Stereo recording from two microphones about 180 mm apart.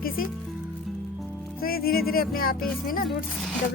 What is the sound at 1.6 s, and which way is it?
Speech, 55° left (ahead or behind).